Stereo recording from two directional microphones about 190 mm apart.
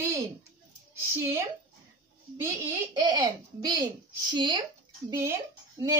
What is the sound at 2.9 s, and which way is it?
A woman's voice, 20° right (ahead or behind).